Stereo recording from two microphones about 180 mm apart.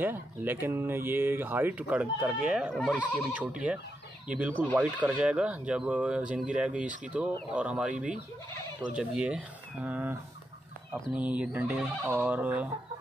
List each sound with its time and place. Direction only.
0.0 s speech: 10° right (ahead or behind)
8.9 s speech: 5° right (ahead or behind)